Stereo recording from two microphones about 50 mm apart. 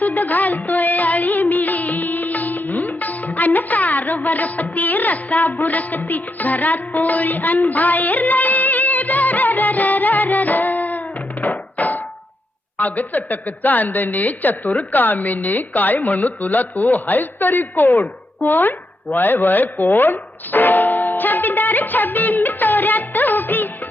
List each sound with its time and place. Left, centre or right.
0.0 s music: left
12.8 s a woman's voice: left